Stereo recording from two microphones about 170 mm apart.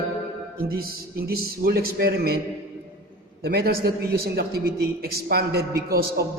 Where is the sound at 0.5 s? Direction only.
60° right (ahead or behind).